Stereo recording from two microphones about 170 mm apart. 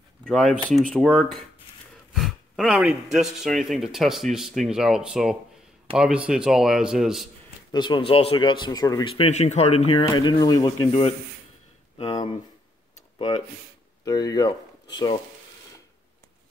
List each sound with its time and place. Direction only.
0.2 s speech: centre (ahead or behind)
7.7 s speech: 25° left (ahead or behind)
9.1 s speech: 40° left (ahead or behind)
10.1 s speech: 25° left (ahead or behind)
14.0 s speech: 20° left (ahead or behind)